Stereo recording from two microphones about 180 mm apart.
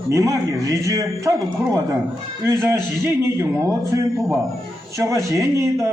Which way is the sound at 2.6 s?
15° right (ahead or behind).